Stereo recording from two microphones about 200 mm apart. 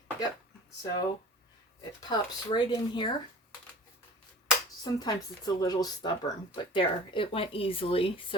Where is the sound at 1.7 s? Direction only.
20° left (ahead or behind).